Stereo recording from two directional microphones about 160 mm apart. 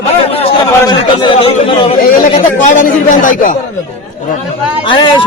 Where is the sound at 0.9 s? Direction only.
30° left (ahead or behind).